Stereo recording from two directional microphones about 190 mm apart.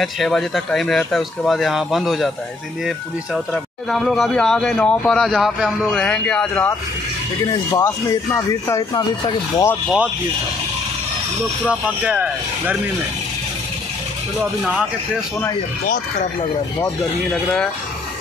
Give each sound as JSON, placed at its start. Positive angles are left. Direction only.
{"t": 0.0, "sound": "speech", "side_deg": 0}
{"t": 3.9, "sound": "speech", "side_deg": 0}
{"t": 7.7, "sound": "speech", "side_deg": 15}
{"t": 12.0, "sound": "speech", "side_deg": -10}
{"t": 14.6, "sound": "speech", "side_deg": -5}